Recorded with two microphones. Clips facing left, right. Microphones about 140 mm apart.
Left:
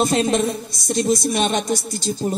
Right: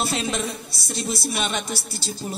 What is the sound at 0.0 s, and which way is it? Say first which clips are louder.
Speech: left 8 dB; 45° left (ahead or behind).